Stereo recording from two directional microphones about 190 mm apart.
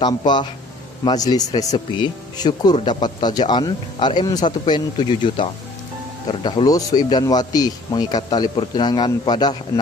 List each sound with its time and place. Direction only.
0.0 s speech: 25° left (ahead or behind)